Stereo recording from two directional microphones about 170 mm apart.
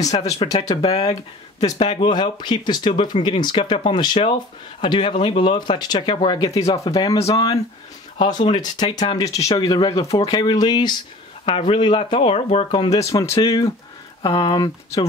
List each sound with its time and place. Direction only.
0.0 s speech: 20° left (ahead or behind)
0.4 s speech: 35° left (ahead or behind)
13.0 s speech: 20° left (ahead or behind)